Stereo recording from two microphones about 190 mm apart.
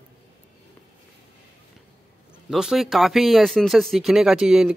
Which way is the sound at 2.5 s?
Centre (ahead or behind).